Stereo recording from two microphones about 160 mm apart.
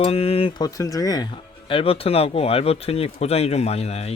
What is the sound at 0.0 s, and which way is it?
Speech, 40° left (ahead or behind).